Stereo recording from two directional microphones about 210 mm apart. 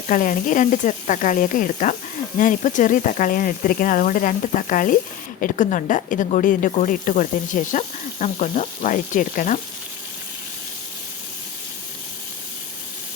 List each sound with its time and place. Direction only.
0.1 s speech: 40° left (ahead or behind)